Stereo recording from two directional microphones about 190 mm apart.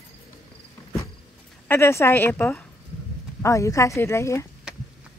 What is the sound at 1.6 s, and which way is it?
Speech, 15° left (ahead or behind).